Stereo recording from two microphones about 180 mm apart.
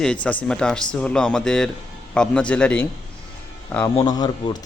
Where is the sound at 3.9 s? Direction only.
20° left (ahead or behind).